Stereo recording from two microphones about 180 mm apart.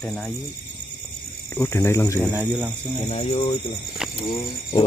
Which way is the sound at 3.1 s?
30° left (ahead or behind).